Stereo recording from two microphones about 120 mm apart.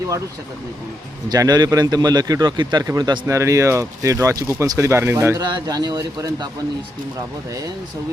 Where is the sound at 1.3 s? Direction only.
35° right (ahead or behind).